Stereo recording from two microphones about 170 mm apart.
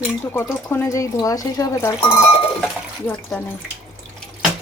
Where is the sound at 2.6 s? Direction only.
5° left (ahead or behind).